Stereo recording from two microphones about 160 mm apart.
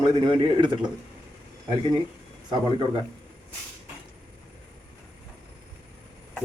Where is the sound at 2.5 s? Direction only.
25° right (ahead or behind).